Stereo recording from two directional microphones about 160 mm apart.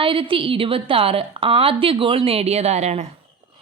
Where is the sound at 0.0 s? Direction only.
35° right (ahead or behind).